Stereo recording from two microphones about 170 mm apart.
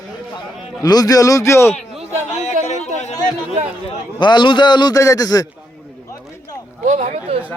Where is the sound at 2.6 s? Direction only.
45° left (ahead or behind).